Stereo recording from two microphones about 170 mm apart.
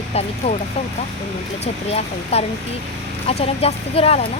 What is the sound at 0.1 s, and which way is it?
Speech, 40° left (ahead or behind).